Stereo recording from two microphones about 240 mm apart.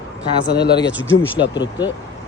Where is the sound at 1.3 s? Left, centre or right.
Centre.